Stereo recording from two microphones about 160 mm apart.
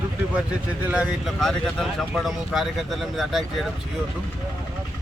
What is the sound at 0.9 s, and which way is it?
Speech, centre (ahead or behind).